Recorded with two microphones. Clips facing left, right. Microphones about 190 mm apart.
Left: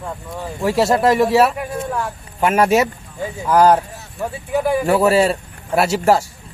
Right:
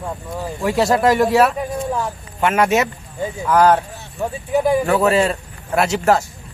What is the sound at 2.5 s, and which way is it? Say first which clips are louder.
Speech: left 2 dB; 30° left (ahead or behind).